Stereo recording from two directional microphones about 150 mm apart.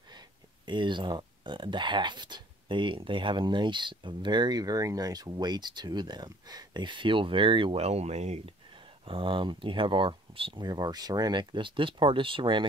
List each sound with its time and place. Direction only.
0.7 s speech: 30° right (ahead or behind); by 8.5 s 45° right (ahead or behind)
9.0 s speech: 35° right (ahead or behind)